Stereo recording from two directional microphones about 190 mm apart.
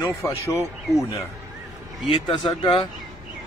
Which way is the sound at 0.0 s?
15° left (ahead or behind).